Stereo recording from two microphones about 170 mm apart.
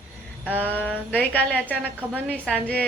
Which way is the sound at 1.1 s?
10° left (ahead or behind).